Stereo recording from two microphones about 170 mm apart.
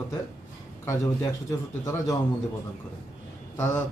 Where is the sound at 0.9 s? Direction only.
20° left (ahead or behind).